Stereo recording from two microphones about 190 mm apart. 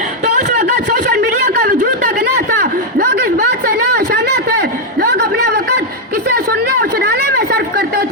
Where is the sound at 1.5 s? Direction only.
55° right (ahead or behind).